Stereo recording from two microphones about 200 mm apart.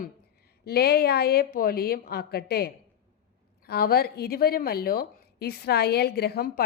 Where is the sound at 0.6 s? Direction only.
50° left (ahead or behind).